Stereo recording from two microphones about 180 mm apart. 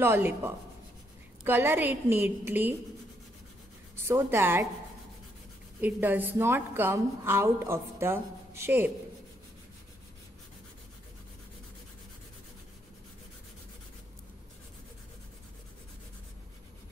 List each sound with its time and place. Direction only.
0.0 s a woman's voice: 10° right (ahead or behind)
4.1 s a woman's voice: 15° right (ahead or behind)
5.8 s a woman's voice: 10° right (ahead or behind)